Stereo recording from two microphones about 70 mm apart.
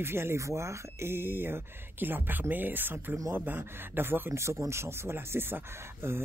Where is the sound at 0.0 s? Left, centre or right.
Right.